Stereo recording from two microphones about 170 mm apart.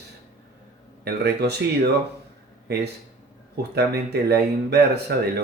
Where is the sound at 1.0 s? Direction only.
75° right (ahead or behind).